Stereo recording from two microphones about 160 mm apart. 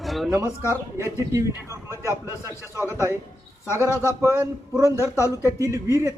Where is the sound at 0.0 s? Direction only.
Centre (ahead or behind).